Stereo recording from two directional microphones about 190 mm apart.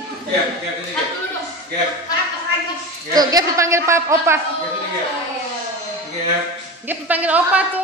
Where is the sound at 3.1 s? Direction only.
15° right (ahead or behind).